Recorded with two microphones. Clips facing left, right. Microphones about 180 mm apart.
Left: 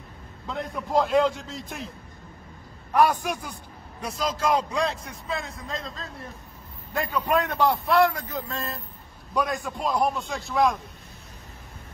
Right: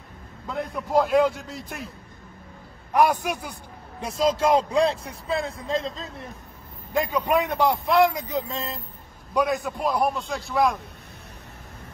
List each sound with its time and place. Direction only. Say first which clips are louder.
0.5 s a man's voice: right 2 dB; centre (ahead or behind)
2.9 s a man's voice: right 1 dB; 10° right (ahead or behind)
4.2 s a man's voice: right 5 dB; 25° right (ahead or behind)
6.9 s a man's voice: right 2 dB; 15° right (ahead or behind)